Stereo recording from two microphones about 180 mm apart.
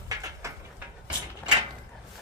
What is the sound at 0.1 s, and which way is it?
Bird, 15° right (ahead or behind).